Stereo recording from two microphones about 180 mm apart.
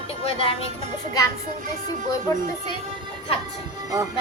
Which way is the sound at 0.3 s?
30° left (ahead or behind).